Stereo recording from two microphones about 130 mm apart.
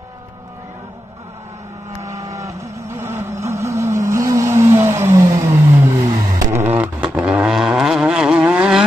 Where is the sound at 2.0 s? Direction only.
25° right (ahead or behind).